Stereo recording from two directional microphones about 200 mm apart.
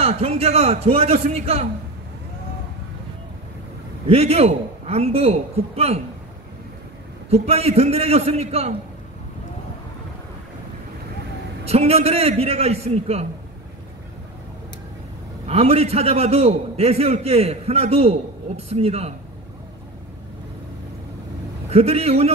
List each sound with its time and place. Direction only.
0.0 s a man's voice: 30° right (ahead or behind)
4.1 s a man's voice: 30° right (ahead or behind)
7.2 s a man's voice: 30° right (ahead or behind)
11.6 s a man's voice: 30° right (ahead or behind)
15.4 s a man's voice: 30° right (ahead or behind)
21.6 s a man's voice: 30° right (ahead or behind)